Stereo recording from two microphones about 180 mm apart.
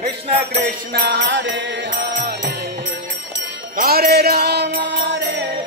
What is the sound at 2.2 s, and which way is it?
Music, 60° right (ahead or behind).